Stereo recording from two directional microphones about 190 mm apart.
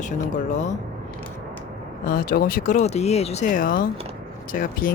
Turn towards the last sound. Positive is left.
turn(degrees=45)  # may be behind; listen again after turning